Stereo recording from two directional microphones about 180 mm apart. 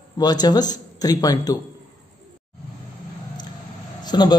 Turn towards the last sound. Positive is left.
turn(degrees=25)  # may be behind; listen again after turning